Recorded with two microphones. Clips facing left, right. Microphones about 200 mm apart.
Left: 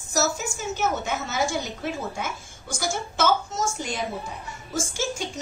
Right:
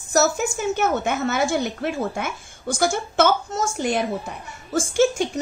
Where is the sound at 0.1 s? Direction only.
60° right (ahead or behind).